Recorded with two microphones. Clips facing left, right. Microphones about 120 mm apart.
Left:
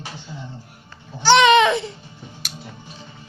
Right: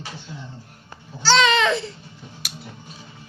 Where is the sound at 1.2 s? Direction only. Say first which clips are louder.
Left 5 dB; 20° left (ahead or behind).